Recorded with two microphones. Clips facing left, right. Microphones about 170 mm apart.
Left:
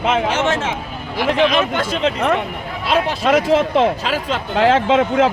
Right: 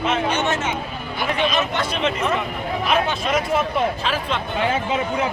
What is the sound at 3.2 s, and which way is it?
Speech, 90° left.